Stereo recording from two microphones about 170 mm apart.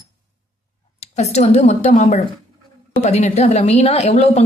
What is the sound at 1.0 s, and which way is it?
Speech, 40° left (ahead or behind).